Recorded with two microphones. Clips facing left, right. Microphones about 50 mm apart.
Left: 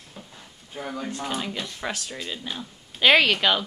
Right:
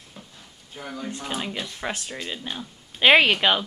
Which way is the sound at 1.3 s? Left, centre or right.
Centre.